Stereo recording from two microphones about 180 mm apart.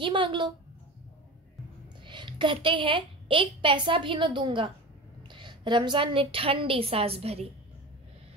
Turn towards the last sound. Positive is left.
turn(degrees=-35)  # may be behind; listen again after turning